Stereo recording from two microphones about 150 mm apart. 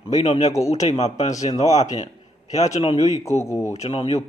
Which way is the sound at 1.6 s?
50° left (ahead or behind).